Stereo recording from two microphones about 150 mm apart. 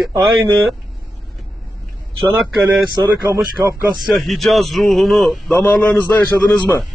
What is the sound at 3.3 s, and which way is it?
Speech, 15° right (ahead or behind).